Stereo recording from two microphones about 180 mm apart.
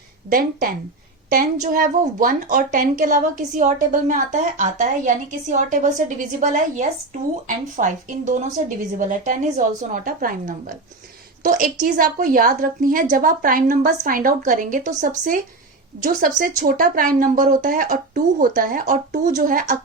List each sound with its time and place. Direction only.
0.3 s a woman's voice: 50° right (ahead or behind)